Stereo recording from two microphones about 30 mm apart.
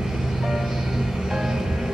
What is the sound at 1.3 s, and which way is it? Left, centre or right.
Music, centre.